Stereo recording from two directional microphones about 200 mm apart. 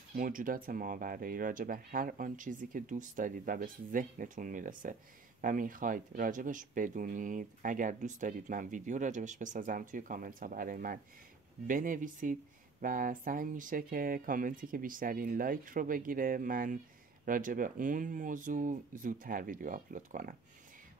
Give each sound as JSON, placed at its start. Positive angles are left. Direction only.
{"t": 0.1, "sound": "speech", "side_deg": -45}